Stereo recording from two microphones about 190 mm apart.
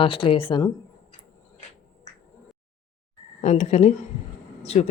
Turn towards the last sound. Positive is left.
turn(degrees=35)  # may be behind; listen again after turning